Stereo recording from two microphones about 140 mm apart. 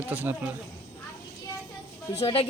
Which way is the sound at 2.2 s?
45° left (ahead or behind).